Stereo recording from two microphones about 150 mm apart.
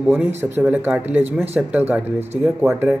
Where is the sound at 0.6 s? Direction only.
10° right (ahead or behind).